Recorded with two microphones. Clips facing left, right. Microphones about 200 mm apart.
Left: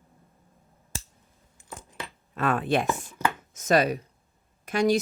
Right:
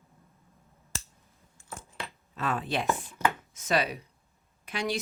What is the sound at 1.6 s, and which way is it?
Keys jangling, 15° left (ahead or behind).